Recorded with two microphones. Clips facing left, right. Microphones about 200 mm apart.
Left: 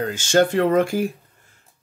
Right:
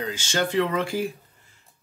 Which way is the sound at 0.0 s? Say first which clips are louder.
Left 8 dB; 50° left (ahead or behind).